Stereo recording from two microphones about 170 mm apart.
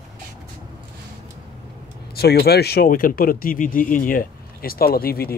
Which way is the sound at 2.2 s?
70° left (ahead or behind).